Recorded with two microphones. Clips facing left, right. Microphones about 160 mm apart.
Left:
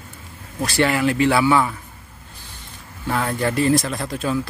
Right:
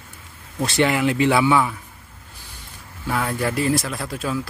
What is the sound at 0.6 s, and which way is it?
Speech, 20° right (ahead or behind).